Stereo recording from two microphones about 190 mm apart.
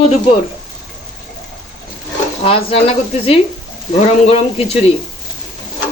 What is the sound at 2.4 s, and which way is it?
Speech, 30° left (ahead or behind).